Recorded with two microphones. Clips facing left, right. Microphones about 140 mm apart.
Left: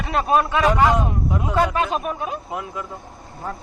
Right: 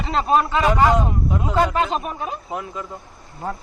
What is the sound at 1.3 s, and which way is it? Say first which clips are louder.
Speech: right 1 dB; 20° right (ahead or behind).